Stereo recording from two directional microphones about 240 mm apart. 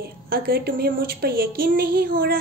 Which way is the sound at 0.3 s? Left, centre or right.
Right.